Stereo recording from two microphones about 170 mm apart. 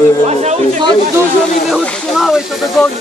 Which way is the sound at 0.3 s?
40° right (ahead or behind).